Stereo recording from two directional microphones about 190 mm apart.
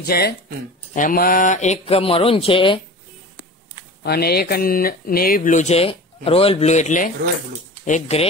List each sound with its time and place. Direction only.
0.0 s speech: 55° left (ahead or behind); by 2.8 s 25° left (ahead or behind)
4.0 s speech: 55° left (ahead or behind); by 8.3 s 35° left (ahead or behind)